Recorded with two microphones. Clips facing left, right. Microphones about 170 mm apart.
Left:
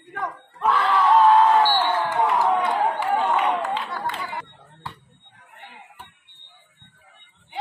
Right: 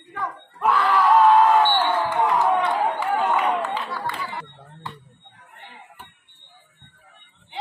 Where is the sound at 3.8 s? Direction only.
20° left (ahead or behind).